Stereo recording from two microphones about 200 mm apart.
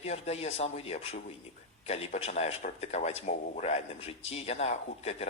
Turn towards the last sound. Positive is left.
turn(degrees=30)  # may be behind; listen again after turning